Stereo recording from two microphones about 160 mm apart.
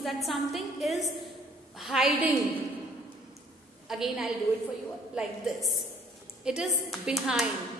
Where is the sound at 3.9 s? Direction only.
Centre (ahead or behind).